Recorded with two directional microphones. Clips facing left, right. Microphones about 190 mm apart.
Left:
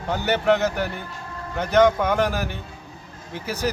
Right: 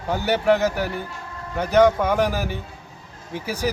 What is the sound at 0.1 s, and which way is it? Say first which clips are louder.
A man's voice: right 1 dB; 10° right (ahead or behind).